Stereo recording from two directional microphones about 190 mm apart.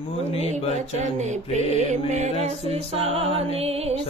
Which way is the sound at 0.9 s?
40° right (ahead or behind).